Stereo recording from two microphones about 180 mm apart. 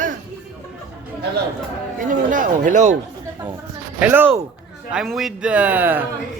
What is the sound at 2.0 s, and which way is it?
Speech, 45° right (ahead or behind).